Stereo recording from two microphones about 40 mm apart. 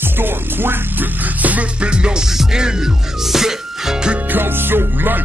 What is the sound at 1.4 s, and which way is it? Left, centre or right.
Music, right.